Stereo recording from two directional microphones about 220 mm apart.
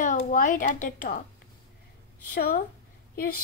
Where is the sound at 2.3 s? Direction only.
40° left (ahead or behind).